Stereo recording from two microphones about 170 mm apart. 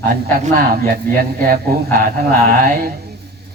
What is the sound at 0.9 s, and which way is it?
Speech, 60° right (ahead or behind).